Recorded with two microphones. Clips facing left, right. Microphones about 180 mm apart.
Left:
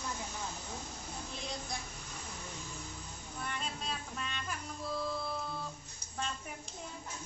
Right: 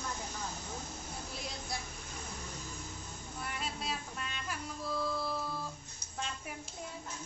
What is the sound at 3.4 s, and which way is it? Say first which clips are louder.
Music: right 1 dB; 5° right (ahead or behind).